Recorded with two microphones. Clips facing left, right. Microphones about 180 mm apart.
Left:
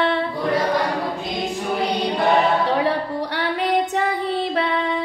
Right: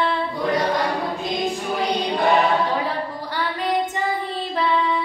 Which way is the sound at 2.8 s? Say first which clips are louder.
Left 5 dB; 70° left (ahead or behind).